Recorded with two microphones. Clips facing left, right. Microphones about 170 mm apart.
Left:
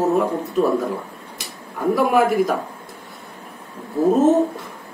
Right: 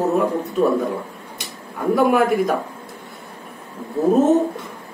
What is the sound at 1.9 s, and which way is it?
Speech, centre (ahead or behind).